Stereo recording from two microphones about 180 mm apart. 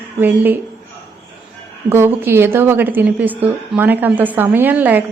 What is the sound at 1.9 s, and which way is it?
A woman's voice, 15° right (ahead or behind).